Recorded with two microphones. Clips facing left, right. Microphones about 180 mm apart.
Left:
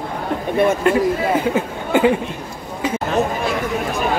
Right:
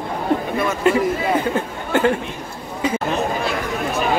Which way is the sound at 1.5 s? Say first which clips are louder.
Left 2 dB; 10° left (ahead or behind).